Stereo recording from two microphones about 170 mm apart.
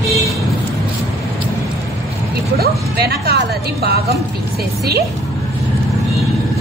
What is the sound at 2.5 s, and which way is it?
Speech, 65° right (ahead or behind).